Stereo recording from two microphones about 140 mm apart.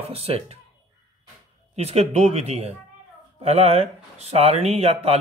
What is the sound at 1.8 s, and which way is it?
Speech, 50° right (ahead or behind).